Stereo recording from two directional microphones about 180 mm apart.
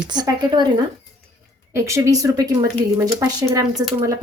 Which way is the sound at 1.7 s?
15° right (ahead or behind).